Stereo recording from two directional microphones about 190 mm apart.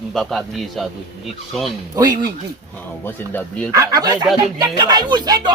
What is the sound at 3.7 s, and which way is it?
Speech, 20° right (ahead or behind).